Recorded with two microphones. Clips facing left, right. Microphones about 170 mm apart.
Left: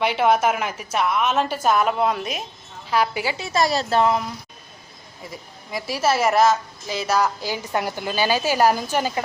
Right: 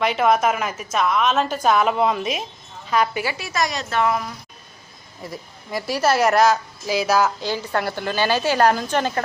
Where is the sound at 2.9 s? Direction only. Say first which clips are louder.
Right 1 dB; 10° left (ahead or behind).